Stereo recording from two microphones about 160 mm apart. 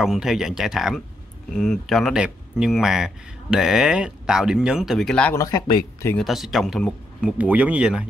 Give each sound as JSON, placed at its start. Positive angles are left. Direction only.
{"t": 0.0, "sound": "speech", "side_deg": 0}
{"t": 5.3, "sound": "speech", "side_deg": 20}
{"t": 6.1, "sound": "speech", "side_deg": 0}